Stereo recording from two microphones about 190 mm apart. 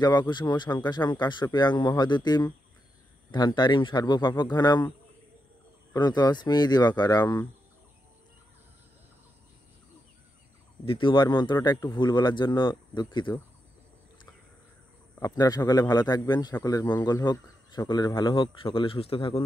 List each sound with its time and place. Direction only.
0.0 s speech: 20° left (ahead or behind)
5.9 s speech: 20° left (ahead or behind)
10.9 s speech: 25° left (ahead or behind)
15.1 s speech: 20° left (ahead or behind)